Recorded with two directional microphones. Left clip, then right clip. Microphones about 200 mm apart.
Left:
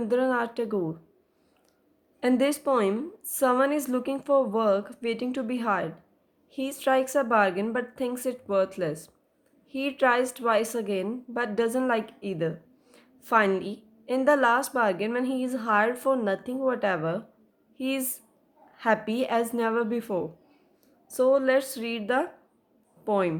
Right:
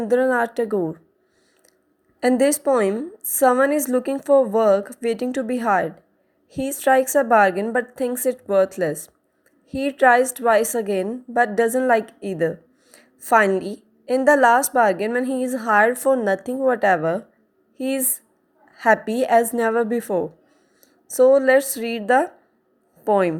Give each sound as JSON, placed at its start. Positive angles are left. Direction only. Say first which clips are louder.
{"t": 0.0, "sound": "a woman's voice", "louder": "right 7 dB", "side_deg": -25}
{"t": 2.2, "sound": "a woman's voice", "louder": "right 7 dB", "side_deg": -25}